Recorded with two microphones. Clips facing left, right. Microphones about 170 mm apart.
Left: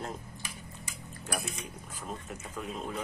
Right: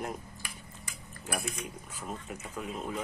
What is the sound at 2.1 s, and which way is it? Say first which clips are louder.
Speech: right 1 dB; 5° right (ahead or behind).